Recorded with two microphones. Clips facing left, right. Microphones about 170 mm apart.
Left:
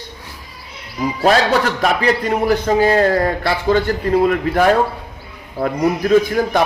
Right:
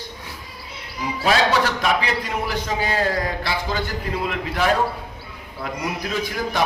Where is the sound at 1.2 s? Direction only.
45° left (ahead or behind).